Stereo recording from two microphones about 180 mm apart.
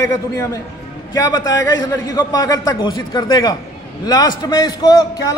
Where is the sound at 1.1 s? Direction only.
20° left (ahead or behind).